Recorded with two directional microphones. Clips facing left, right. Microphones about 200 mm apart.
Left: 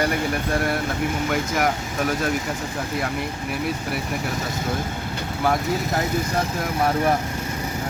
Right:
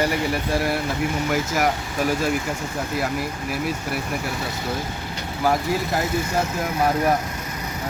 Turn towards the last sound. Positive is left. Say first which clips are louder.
# even
turn(degrees=0)  # may be behind; listen again after turning